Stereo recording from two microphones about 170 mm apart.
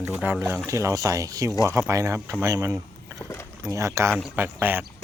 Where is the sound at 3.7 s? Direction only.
15° right (ahead or behind).